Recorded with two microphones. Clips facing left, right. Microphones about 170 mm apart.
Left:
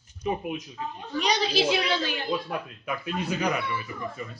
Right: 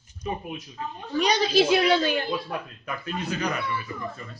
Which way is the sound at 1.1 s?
45° right (ahead or behind).